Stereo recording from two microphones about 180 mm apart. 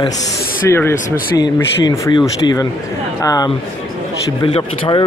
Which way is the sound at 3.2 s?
20° left (ahead or behind).